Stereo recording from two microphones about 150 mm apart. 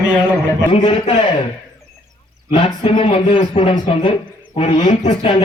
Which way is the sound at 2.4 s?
35° left (ahead or behind).